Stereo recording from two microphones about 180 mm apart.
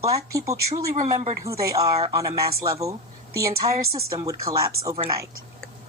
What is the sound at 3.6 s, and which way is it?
Speech, 30° right (ahead or behind).